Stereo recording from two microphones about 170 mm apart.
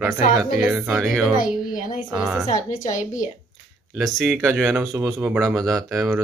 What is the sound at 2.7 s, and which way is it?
Speech, 50° left (ahead or behind).